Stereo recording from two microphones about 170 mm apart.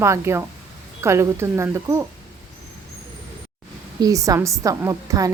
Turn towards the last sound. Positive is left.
turn(degrees=-20)  # may be behind; listen again after turning